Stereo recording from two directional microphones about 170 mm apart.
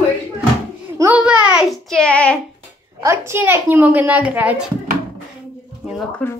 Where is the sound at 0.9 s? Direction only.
10° right (ahead or behind); by 2.4 s 5° left (ahead or behind).